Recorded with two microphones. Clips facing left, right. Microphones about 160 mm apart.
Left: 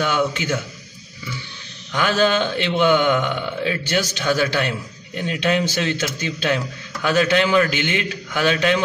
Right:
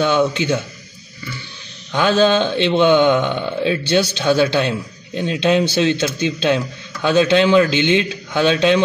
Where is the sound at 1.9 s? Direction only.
20° right (ahead or behind).